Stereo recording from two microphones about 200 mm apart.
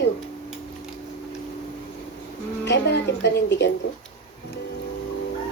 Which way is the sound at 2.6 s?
60° left (ahead or behind).